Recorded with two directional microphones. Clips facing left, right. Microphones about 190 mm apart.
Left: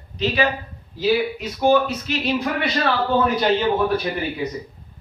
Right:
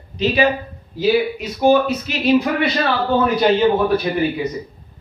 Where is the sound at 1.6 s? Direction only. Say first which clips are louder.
Right 3 dB; 10° right (ahead or behind).